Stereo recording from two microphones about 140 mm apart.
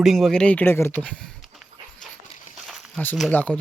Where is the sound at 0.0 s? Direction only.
Centre (ahead or behind).